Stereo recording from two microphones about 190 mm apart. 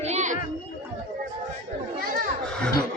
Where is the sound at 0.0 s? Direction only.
40° right (ahead or behind).